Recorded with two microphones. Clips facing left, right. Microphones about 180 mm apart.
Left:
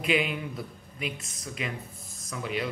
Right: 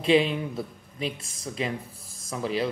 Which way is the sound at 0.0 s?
30° right (ahead or behind).